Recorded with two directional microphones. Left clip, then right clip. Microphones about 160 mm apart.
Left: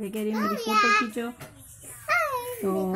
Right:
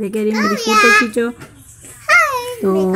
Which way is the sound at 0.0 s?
15° right (ahead or behind).